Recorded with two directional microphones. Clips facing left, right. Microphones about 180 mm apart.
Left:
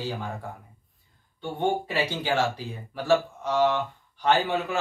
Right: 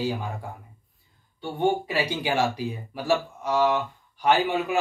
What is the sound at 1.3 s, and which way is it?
Speech, 10° right (ahead or behind).